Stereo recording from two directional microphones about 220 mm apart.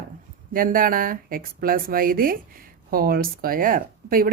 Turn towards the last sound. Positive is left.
turn(degrees=-40)  # may be behind; listen again after turning